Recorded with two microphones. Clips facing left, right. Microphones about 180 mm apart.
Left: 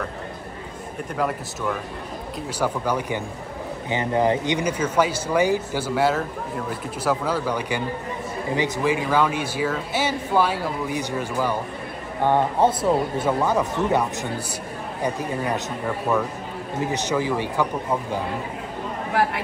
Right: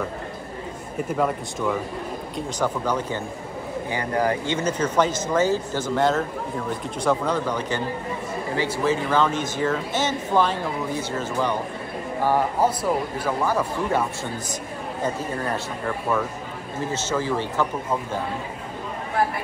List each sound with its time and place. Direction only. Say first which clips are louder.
2.3 s speech: even; 10° left (ahead or behind)
3.9 s speech: left 3 dB; 20° left (ahead or behind)
12.2 s speech: left 2 dB; 25° left (ahead or behind)
16.8 s speech: left 2 dB; 15° left (ahead or behind)